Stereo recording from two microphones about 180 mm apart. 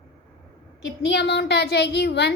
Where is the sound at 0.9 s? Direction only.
80° left.